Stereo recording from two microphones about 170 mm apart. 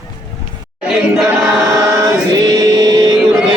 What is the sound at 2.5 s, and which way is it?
Music, 20° right (ahead or behind).